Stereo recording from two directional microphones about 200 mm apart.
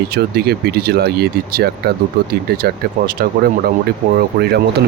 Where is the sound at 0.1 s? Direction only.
55° right (ahead or behind).